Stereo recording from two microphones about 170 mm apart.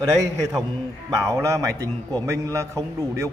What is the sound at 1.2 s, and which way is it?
A man's voice, 15° right (ahead or behind).